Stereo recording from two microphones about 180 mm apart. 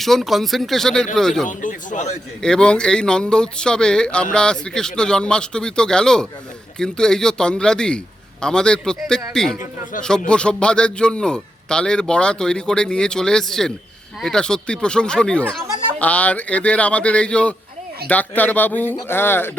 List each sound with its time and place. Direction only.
0.0 s speech: centre (ahead or behind)
1.5 s a man's voice: 45° left (ahead or behind)
2.4 s speech: 5° left (ahead or behind)